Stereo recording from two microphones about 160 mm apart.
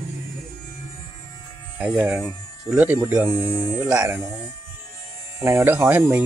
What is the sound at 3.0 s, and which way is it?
Speech, 20° right (ahead or behind).